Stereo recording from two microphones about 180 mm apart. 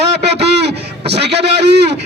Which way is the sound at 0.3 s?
70° right (ahead or behind).